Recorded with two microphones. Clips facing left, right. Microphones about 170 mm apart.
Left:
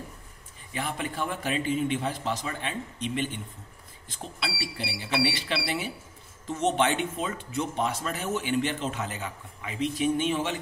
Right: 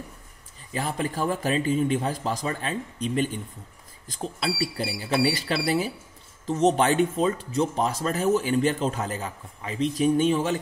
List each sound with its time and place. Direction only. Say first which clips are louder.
0.7 s speech: right 4 dB; 40° right (ahead or behind)